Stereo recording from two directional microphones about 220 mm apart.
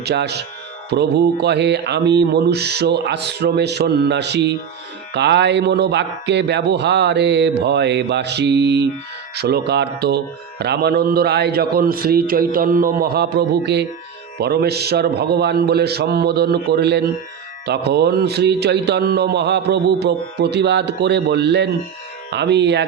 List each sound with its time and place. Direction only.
0.0 s a man's voice: 50° right (ahead or behind)